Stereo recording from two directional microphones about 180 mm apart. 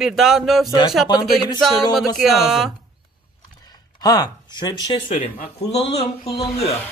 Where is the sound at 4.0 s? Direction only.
20° left (ahead or behind).